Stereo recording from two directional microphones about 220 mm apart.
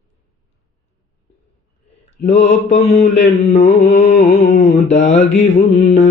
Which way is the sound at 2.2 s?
30° left (ahead or behind).